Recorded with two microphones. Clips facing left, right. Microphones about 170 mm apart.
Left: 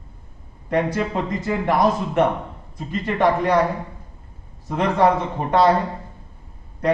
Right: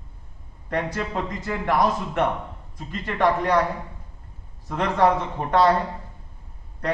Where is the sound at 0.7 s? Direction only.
10° left (ahead or behind).